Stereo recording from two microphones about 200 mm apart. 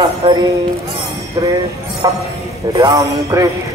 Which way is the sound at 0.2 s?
25° right (ahead or behind).